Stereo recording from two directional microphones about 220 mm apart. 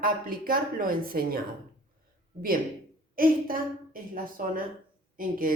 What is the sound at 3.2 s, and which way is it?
A woman's voice, 40° right (ahead or behind).